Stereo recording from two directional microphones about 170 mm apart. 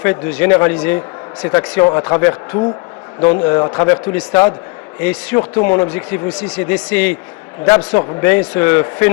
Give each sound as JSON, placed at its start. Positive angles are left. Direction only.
{"t": 0.0, "sound": "a man's voice", "side_deg": 10}